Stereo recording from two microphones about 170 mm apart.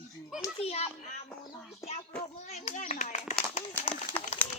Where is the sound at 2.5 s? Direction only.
45° left (ahead or behind).